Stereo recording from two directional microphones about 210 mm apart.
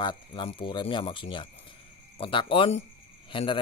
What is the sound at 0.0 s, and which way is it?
A man's voice, 20° left (ahead or behind).